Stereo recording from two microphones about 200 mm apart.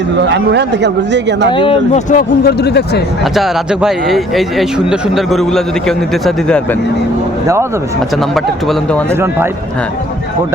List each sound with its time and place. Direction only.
0.2 s speech: 60° right (ahead or behind)
1.5 s speech: 25° left (ahead or behind); by 3.0 s 55° left (ahead or behind)
3.3 s a man's voice: 5° right (ahead or behind)
8.4 s a man's voice: 5° left (ahead or behind)